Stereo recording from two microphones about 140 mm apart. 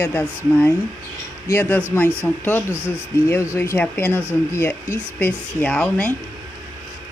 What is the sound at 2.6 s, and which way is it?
Speech, 10° right (ahead or behind).